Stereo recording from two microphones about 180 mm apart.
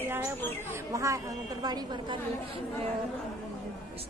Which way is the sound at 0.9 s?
20° right (ahead or behind).